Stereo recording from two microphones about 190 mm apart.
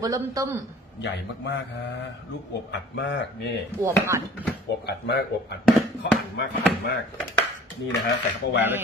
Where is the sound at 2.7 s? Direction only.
65° left (ahead or behind).